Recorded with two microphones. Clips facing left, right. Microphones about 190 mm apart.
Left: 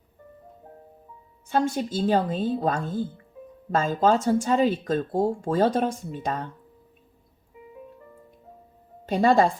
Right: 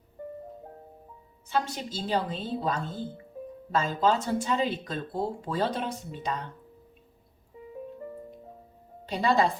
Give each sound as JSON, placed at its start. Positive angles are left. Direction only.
{"t": 1.5, "sound": "speech", "side_deg": 50}
{"t": 9.0, "sound": "speech", "side_deg": 50}